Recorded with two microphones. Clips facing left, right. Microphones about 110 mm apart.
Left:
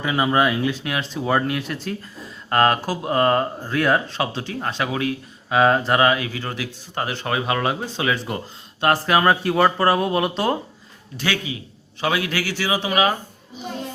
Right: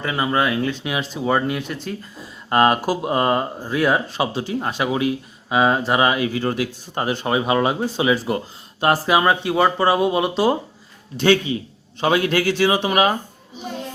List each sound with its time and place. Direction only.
0.0 s speech: 5° left (ahead or behind)
2.5 s speech: 15° right (ahead or behind)
6.2 s speech: 30° right (ahead or behind); by 10.6 s centre (ahead or behind)
11.2 s speech: 30° right (ahead or behind)